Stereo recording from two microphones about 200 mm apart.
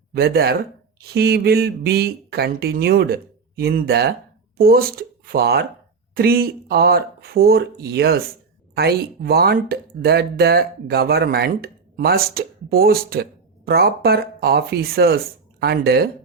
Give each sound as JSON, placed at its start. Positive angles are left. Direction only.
{"t": 0.1, "sound": "speech", "side_deg": -50}